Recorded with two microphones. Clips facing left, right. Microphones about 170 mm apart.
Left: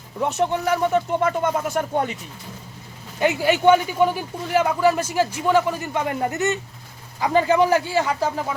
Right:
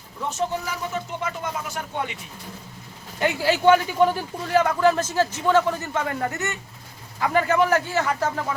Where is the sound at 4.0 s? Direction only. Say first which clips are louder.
Even; 5° left (ahead or behind).